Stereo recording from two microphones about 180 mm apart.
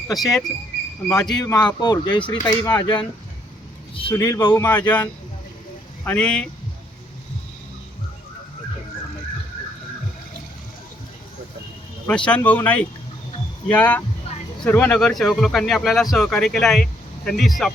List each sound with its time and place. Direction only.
0.1 s speech: centre (ahead or behind)
1.3 s speech: 20° left (ahead or behind)
2.4 s speech: 10° left (ahead or behind)
2.8 s speech: 25° left (ahead or behind)
4.1 s speech: 15° left (ahead or behind)
6.1 s speech: 5° left (ahead or behind)
12.0 s speech: 5° left (ahead or behind)